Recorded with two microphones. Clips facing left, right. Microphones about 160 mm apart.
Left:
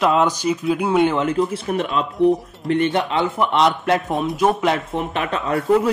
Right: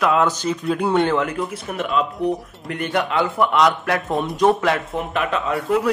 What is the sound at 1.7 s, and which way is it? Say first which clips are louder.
Speech: left 5 dB; 40° left (ahead or behind).